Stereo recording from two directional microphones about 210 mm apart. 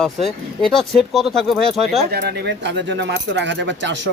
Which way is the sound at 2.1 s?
50° right (ahead or behind).